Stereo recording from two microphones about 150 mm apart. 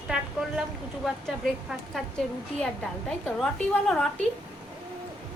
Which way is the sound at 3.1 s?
5° left (ahead or behind).